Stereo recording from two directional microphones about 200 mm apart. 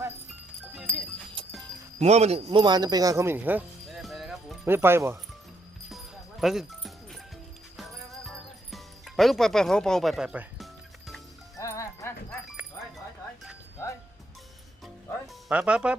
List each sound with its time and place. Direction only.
0.8 s music: 5° right (ahead or behind)
1.4 s music: 25° right (ahead or behind)
2.0 s speech: 30° right (ahead or behind); by 3.6 s 10° right (ahead or behind)
3.8 s music: centre (ahead or behind)
4.6 s speech: 10° right (ahead or behind)
6.4 s music: centre (ahead or behind)
11.5 s music: 15° left (ahead or behind)
15.4 s speech: 5° right (ahead or behind)